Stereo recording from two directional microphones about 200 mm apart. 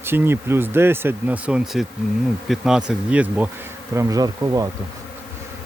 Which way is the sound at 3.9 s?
15° right (ahead or behind).